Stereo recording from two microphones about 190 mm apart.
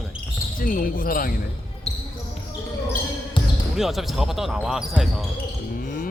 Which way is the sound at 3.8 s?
Centre (ahead or behind).